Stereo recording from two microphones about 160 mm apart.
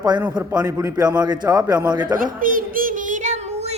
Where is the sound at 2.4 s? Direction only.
60° right (ahead or behind); by 3.7 s 45° right (ahead or behind).